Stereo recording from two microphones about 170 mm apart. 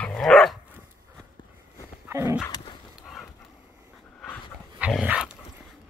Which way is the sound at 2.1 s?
15° right (ahead or behind).